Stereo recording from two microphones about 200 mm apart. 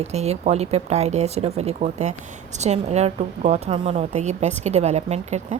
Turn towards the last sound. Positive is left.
turn(degrees=-35)  # may be behind; listen again after turning